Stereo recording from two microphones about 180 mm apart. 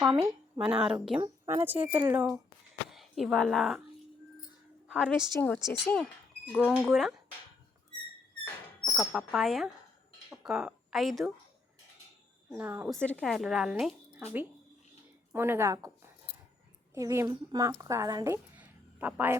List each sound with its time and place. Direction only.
0.1 s speech: 15° right (ahead or behind)
0.6 s a woman's voice: 5° right (ahead or behind)
1.2 s speech: 15° right (ahead or behind)
2.9 s speech: centre (ahead or behind)
4.9 s a woman's voice: 5° left (ahead or behind)
6.6 s a woman's voice: 5° right (ahead or behind)
8.8 s speech: centre (ahead or behind)
12.5 s speech: 15° right (ahead or behind)
12.9 s a woman's voice: 5° left (ahead or behind)
15.3 s speech: 10° right (ahead or behind)
16.9 s speech: 15° right (ahead or behind)